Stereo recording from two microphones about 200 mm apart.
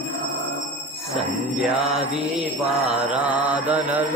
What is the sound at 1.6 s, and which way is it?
Mantra, 5° right (ahead or behind).